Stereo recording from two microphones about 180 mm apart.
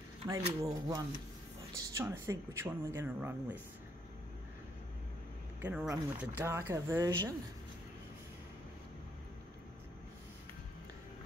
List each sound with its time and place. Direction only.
0.2 s speech: 20° right (ahead or behind)
5.6 s speech: 10° right (ahead or behind)